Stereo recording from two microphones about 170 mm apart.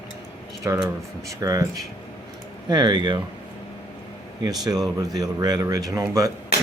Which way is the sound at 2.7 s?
25° right (ahead or behind).